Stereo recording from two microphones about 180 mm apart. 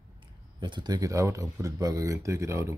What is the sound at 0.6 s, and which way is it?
Speech, 25° right (ahead or behind).